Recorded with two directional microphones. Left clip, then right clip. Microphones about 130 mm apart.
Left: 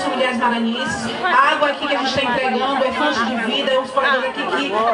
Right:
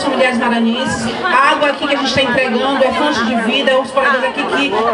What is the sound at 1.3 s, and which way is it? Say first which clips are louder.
Speech: right 3 dB; 15° right (ahead or behind).